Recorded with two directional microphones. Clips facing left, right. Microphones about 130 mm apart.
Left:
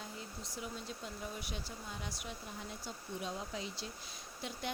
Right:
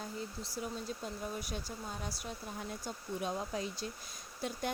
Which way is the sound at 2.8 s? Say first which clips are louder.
Right 4 dB; 50° right (ahead or behind).